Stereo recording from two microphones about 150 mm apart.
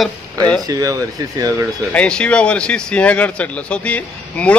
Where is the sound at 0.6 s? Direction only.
25° right (ahead or behind).